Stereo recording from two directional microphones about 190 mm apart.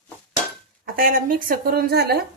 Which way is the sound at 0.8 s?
50° right (ahead or behind).